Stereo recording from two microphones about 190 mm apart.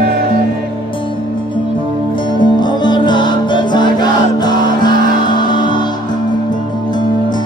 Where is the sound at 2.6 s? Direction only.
25° left (ahead or behind).